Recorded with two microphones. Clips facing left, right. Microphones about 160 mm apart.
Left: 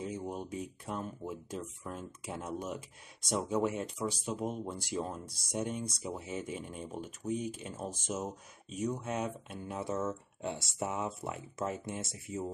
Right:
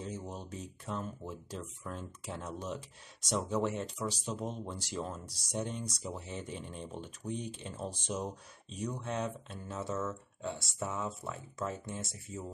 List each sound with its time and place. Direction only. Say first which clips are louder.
0.0 s speech: left 3 dB; 10° left (ahead or behind)